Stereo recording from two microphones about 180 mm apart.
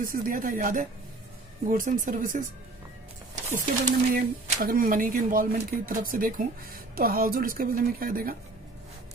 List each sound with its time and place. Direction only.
0.0 s speech: 50° right (ahead or behind)
3.4 s speech: 45° right (ahead or behind)